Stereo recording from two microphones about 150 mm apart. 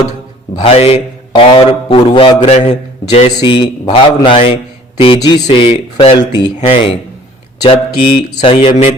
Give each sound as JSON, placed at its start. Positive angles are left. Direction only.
{"t": 0.6, "sound": "a man's voice", "side_deg": 40}
{"t": 3.2, "sound": "a man's voice", "side_deg": 30}
{"t": 5.7, "sound": "a man's voice", "side_deg": 45}